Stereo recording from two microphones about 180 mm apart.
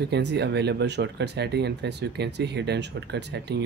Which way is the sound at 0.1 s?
70° right (ahead or behind).